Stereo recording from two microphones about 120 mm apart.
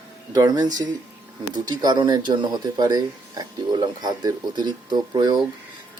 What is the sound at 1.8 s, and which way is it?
Speech, 40° right (ahead or behind).